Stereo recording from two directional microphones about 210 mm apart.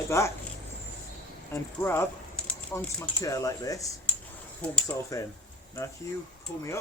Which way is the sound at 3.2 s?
15° left (ahead or behind).